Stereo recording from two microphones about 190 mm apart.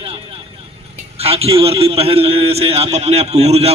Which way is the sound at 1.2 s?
30° right (ahead or behind).